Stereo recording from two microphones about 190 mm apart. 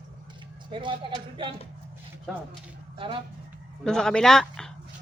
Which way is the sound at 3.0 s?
30° right (ahead or behind).